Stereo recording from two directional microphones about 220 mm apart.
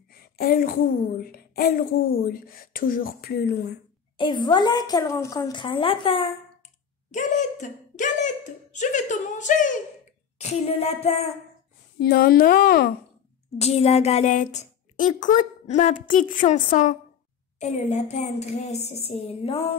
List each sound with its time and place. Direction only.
0.4 s a woman's voice: 40° left (ahead or behind)
4.2 s a woman's voice: 20° left (ahead or behind)
7.1 s a sound: 35° left (ahead or behind)
8.7 s a woman's voice: 35° left (ahead or behind)
12.0 s a woman's voice: 45° left (ahead or behind)
13.6 s a woman's voice: 30° left (ahead or behind)